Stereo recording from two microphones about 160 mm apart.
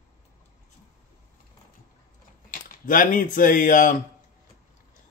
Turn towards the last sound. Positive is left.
turn(degrees=55)  # may be behind; listen again after turning